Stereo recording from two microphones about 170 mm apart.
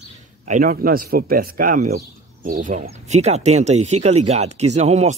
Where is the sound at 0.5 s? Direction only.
55° right (ahead or behind).